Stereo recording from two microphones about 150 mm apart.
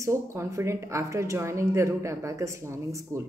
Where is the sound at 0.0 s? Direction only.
20° right (ahead or behind).